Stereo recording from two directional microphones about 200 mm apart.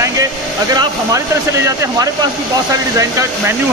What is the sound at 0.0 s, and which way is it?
Speech, 20° right (ahead or behind).